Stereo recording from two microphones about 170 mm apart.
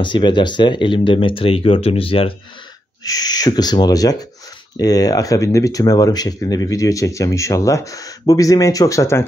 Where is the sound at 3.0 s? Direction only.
20° left (ahead or behind).